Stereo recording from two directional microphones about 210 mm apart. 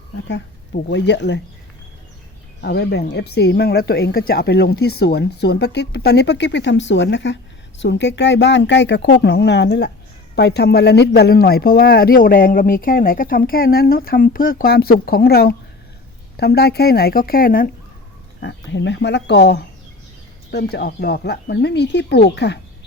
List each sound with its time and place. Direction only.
0.3 s speech: 55° left (ahead or behind)
2.6 s speech: 50° left (ahead or behind)
18.3 s speech: 55° left (ahead or behind)